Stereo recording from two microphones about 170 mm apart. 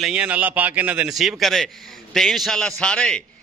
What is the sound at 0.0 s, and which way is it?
A man's voice, 5° right (ahead or behind).